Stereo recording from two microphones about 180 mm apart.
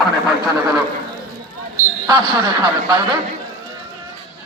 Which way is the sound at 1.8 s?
20° right (ahead or behind).